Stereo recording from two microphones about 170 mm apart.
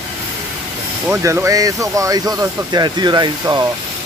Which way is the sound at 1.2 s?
15° right (ahead or behind).